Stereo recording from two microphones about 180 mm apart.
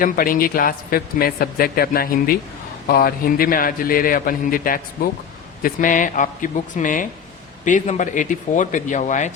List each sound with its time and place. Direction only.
0.0 s a man's voice: 50° left (ahead or behind)